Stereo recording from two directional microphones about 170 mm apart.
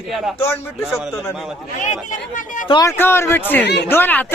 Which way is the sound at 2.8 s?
15° left (ahead or behind).